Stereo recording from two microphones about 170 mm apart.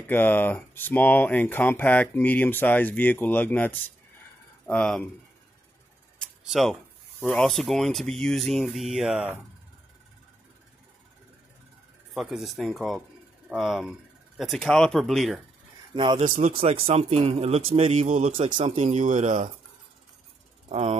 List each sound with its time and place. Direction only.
0.0 s speech: 10° left (ahead or behind)
6.1 s speech: centre (ahead or behind)
12.1 s speech: centre (ahead or behind)
15.9 s a man's voice: 30° right (ahead or behind)
18.3 s a man's voice: 30° right (ahead or behind)
18.9 s speech: 45° right (ahead or behind)
20.6 s mechanisms: 40° right (ahead or behind)